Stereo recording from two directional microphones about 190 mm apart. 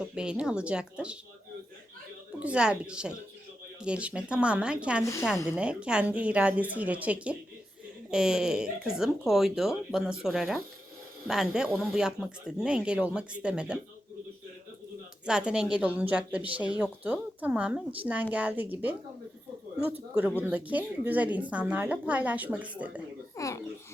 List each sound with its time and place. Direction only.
0.0 s speech: 5° right (ahead or behind)
2.4 s speech: 5° right (ahead or behind)
15.3 s speech: 5° right (ahead or behind)
20.5 s speech: 10° right (ahead or behind)
23.4 s babbling: 15° left (ahead or behind)